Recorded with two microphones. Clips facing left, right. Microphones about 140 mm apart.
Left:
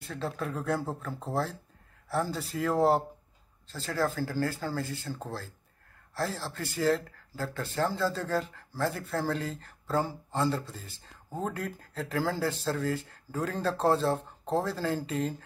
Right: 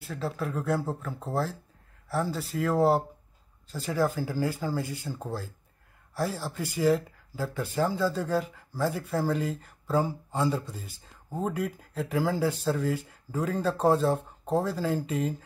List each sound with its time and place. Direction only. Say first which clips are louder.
0.0 s speech: right 2 dB; 5° right (ahead or behind)
3.6 s speech: right 3 dB; 15° right (ahead or behind)
6.1 s speech: right 2 dB; 10° right (ahead or behind)